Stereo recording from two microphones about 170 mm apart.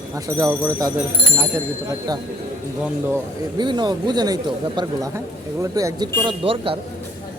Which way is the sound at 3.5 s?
25° right (ahead or behind).